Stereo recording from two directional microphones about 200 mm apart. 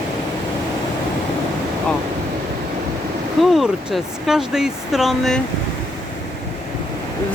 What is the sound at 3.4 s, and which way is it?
Speech, centre (ahead or behind).